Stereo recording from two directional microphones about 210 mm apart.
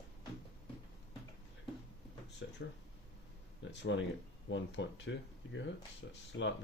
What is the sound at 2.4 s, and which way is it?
Speech, 55° left (ahead or behind).